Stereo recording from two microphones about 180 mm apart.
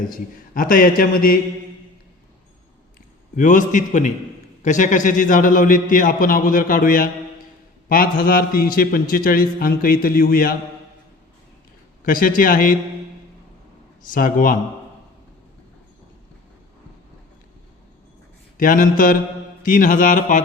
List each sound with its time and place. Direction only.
0.1 s a man's voice: 50° left (ahead or behind)
3.3 s a man's voice: 45° left (ahead or behind)
12.0 s a man's voice: 50° left (ahead or behind)
14.1 s a man's voice: 50° left (ahead or behind)
18.5 s a man's voice: 50° left (ahead or behind)